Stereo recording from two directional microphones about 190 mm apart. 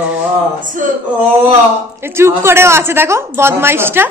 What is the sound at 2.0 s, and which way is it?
Speech, 15° right (ahead or behind).